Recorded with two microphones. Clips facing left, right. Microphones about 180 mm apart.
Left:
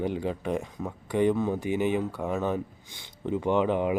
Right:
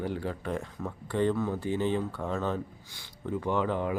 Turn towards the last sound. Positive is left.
turn(degrees=20)  # may be behind; listen again after turning